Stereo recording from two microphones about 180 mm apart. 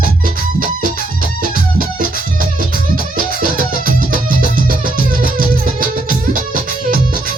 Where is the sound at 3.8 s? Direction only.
50° right (ahead or behind).